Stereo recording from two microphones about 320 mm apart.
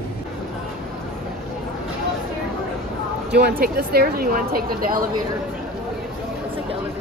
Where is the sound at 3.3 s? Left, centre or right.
Right.